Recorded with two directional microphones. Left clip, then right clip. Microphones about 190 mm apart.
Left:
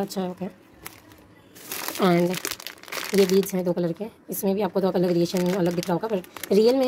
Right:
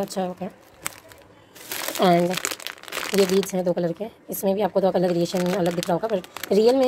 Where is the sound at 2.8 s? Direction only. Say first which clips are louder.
Right 2 dB; centre (ahead or behind).